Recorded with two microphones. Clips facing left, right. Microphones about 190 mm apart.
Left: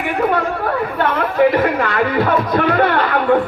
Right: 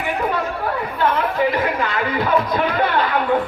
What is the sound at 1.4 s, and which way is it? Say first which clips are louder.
Speech: left 8 dB; 60° left (ahead or behind).